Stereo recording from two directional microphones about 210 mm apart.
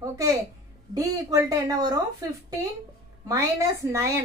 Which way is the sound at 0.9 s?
15° right (ahead or behind).